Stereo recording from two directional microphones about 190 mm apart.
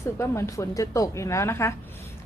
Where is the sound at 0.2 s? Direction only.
15° left (ahead or behind).